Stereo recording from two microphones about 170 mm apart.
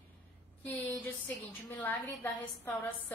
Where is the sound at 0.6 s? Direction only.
10° left (ahead or behind).